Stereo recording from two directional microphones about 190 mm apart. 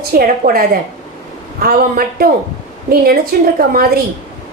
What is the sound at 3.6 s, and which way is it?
Speech, 50° right (ahead or behind).